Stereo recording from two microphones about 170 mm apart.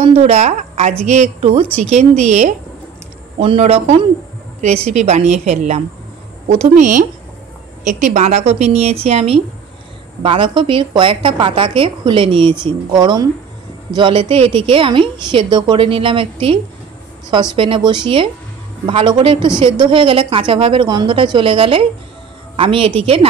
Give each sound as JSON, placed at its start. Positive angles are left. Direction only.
{"t": 0.0, "sound": "a woman's voice", "side_deg": -40}